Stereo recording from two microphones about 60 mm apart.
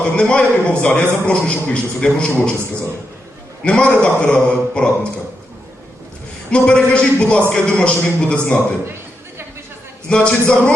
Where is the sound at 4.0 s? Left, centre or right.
Centre.